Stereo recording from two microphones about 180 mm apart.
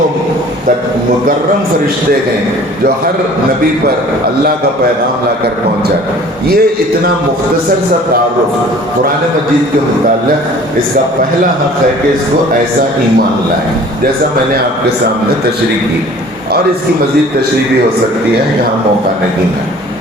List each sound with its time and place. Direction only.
6.5 s a man's voice: 55° right (ahead or behind)